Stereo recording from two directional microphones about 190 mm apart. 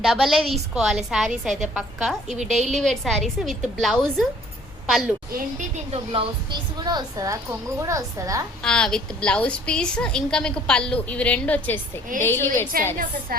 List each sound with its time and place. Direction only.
0.0 s a woman's voice: centre (ahead or behind)
2.6 s a woman's voice: 35° right (ahead or behind)
2.8 s a woman's voice: centre (ahead or behind)
5.9 s a woman's voice: 30° right (ahead or behind)
8.6 s a woman's voice: 5° left (ahead or behind)
12.7 s a woman's voice: 50° right (ahead or behind)